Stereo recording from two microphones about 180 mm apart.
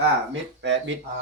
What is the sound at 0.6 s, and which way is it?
Speech, 80° right.